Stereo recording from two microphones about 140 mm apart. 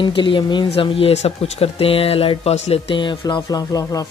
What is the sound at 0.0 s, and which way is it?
Speech, 35° left (ahead or behind).